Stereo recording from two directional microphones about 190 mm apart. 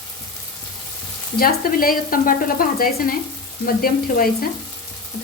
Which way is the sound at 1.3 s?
50° left (ahead or behind).